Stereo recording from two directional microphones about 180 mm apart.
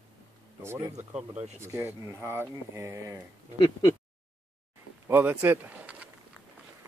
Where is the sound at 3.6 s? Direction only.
25° left (ahead or behind).